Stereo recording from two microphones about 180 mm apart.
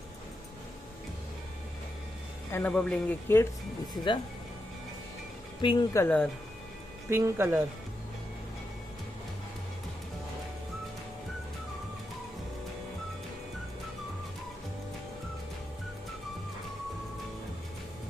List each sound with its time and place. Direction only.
2.5 s speech: 10° left (ahead or behind)
3.9 s speech: 25° left (ahead or behind)
5.6 s speech: 25° left (ahead or behind)
5.9 s speech: 5° left (ahead or behind)
7.1 s speech: 15° right (ahead or behind)